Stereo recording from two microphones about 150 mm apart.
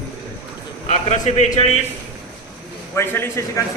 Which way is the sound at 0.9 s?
55° left (ahead or behind).